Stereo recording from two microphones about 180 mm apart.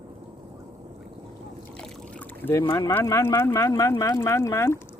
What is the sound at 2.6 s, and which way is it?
Speech, 20° left (ahead or behind).